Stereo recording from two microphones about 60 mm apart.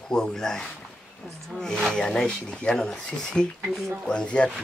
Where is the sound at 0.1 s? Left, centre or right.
Centre.